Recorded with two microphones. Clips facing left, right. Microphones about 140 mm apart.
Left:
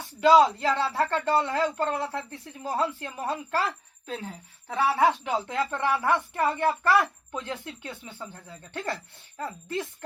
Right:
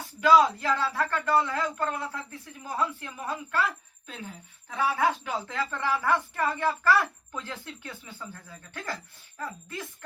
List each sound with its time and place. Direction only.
0.2 s speech: 25° left (ahead or behind)